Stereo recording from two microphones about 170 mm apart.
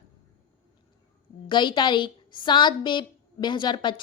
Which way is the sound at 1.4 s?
25° left (ahead or behind).